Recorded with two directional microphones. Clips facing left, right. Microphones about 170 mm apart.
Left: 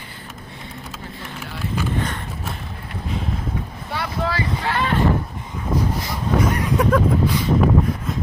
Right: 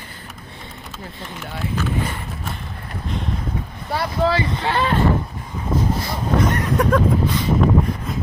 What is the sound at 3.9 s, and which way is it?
Speech, 30° right (ahead or behind).